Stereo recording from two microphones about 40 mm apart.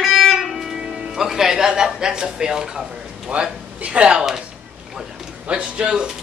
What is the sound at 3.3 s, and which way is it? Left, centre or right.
Speech, right.